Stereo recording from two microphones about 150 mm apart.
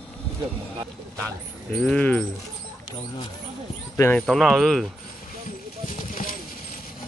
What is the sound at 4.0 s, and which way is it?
Speech, 15° left (ahead or behind).